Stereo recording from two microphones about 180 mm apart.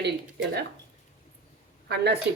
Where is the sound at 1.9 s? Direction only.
65° right (ahead or behind).